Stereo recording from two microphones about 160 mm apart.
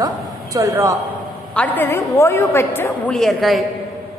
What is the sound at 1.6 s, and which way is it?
A woman's voice, 10° left (ahead or behind).